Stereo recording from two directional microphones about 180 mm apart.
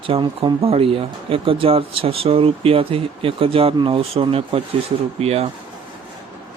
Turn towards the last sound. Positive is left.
turn(degrees=-35)  # may be behind; listen again after turning